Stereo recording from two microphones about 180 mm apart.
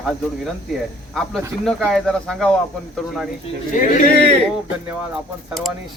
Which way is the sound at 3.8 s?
45° left (ahead or behind).